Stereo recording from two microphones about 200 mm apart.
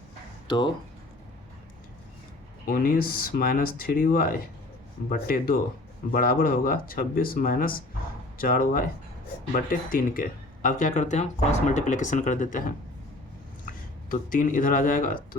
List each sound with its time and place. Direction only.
0.4 s speech: 20° left (ahead or behind)
2.6 s speech: 45° left (ahead or behind)
14.1 s speech: 40° left (ahead or behind)